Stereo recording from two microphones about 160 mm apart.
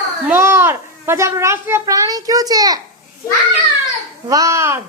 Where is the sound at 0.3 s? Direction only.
15° right (ahead or behind).